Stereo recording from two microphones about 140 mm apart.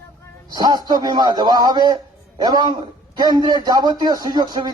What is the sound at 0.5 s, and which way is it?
A man's voice, 30° right (ahead or behind).